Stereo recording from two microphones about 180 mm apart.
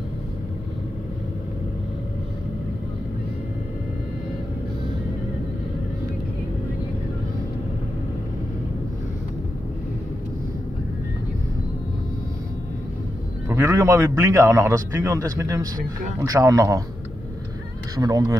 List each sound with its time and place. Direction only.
13.5 s a man's voice: 15° right (ahead or behind)
17.9 s a man's voice: 20° right (ahead or behind)